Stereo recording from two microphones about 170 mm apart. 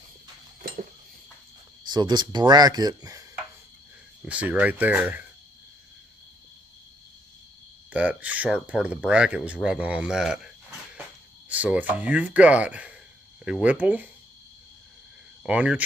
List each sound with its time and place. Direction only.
1.9 s speech: 25° right (ahead or behind)
4.2 s speech: 10° right (ahead or behind)
7.9 s speech: 10° right (ahead or behind)
15.4 s speech: 10° right (ahead or behind)